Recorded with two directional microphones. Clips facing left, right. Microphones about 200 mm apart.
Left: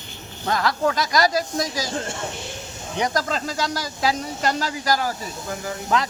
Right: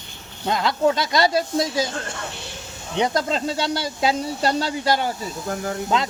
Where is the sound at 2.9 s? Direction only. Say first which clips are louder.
Right 2 dB; 25° right (ahead or behind).